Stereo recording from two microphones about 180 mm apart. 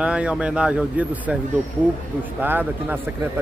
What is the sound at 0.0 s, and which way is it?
A man's voice, 5° right (ahead or behind).